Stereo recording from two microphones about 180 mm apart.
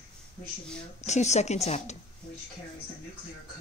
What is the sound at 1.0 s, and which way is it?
Speech, 40° left (ahead or behind).